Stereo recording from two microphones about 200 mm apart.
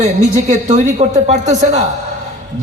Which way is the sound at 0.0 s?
35° right (ahead or behind).